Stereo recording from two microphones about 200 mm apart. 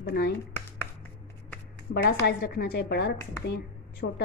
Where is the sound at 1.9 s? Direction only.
50° left (ahead or behind).